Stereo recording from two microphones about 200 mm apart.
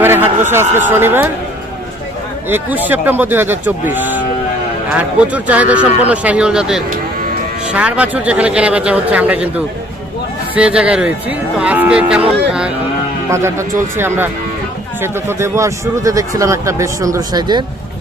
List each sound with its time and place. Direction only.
0.0 s a sound: 10° right (ahead or behind)
0.9 s speech: 10° right (ahead or behind)
2.5 s speech: 10° right (ahead or behind)
13.3 s speech: 15° right (ahead or behind)